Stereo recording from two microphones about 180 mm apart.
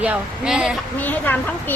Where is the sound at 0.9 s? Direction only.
10° left (ahead or behind).